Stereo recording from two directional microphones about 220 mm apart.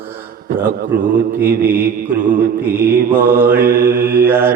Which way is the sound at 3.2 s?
10° right (ahead or behind).